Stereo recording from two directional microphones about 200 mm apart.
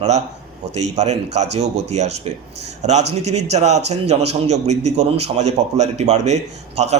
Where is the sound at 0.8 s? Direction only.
35° right (ahead or behind).